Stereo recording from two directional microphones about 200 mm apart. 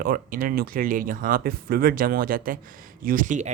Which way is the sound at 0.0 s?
45° right (ahead or behind).